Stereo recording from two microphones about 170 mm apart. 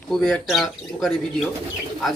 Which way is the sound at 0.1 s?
Centre (ahead or behind).